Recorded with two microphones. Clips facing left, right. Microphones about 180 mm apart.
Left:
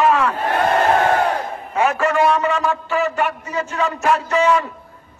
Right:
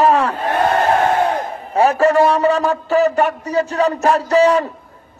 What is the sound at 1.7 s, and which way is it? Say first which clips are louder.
Speech: right 5 dB; 35° right (ahead or behind).